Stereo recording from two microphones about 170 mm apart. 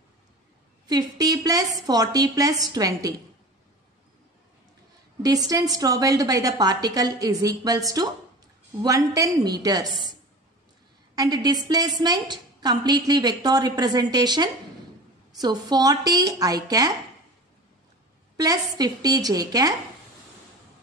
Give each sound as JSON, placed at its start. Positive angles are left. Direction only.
{"t": 0.8, "sound": "a woman's voice", "side_deg": -20}
{"t": 5.2, "sound": "a woman's voice", "side_deg": -20}
{"t": 11.1, "sound": "a woman's voice", "side_deg": -25}
{"t": 18.4, "sound": "a woman's voice", "side_deg": -20}